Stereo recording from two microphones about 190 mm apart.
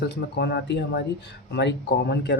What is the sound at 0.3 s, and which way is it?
Speech, 60° left (ahead or behind).